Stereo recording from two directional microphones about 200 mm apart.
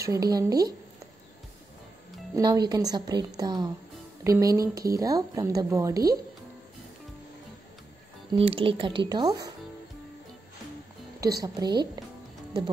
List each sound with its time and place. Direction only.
0.0 s speech: 15° right (ahead or behind)
2.3 s speech: 15° right (ahead or behind)
8.3 s speech: 25° right (ahead or behind)
11.4 s speech: 20° right (ahead or behind)